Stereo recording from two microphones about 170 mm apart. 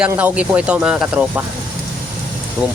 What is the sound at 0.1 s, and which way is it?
Speech, 10° right (ahead or behind).